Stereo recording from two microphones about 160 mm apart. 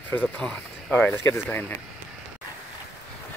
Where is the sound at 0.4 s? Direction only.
5° left (ahead or behind).